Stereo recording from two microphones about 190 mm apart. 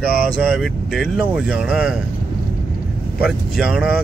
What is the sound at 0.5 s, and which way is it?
Speech, centre (ahead or behind).